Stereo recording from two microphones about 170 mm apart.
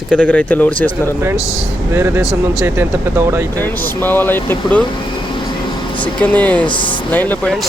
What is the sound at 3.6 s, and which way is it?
Speech, 10° left (ahead or behind).